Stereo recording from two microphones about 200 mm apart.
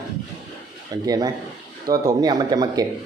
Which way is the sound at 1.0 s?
15° right (ahead or behind).